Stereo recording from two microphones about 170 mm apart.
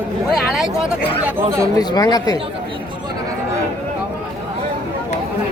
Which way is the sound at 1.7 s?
20° left (ahead or behind).